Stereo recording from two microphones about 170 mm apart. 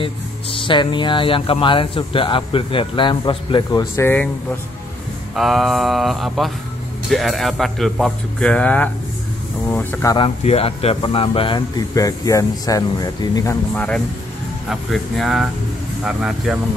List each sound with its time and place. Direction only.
0.0 s speech: 30° left (ahead or behind)
3.9 s speech: 15° left (ahead or behind)
5.3 s speech: centre (ahead or behind)
10.1 s speech: 35° left (ahead or behind); by 16.5 s 5° right (ahead or behind)